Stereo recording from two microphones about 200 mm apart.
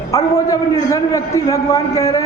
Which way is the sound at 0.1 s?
15° left (ahead or behind).